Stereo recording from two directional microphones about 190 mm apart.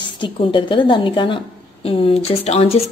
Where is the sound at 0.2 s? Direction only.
25° left (ahead or behind).